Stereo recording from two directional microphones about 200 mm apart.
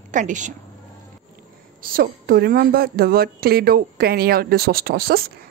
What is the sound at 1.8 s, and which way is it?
A woman's voice, 45° right (ahead or behind).